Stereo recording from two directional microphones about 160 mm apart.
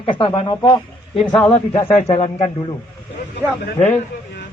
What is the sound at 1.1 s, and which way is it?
Speech, 5° left (ahead or behind).